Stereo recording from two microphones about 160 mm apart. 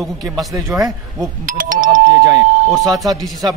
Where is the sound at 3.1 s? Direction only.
Centre (ahead or behind).